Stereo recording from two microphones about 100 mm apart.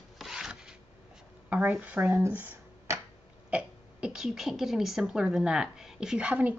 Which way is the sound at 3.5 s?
5° right (ahead or behind).